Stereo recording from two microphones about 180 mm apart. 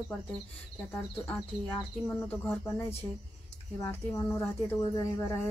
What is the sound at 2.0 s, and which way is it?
Speech, 10° left (ahead or behind).